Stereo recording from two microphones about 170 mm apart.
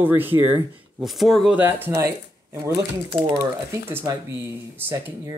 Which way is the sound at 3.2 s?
15° right (ahead or behind).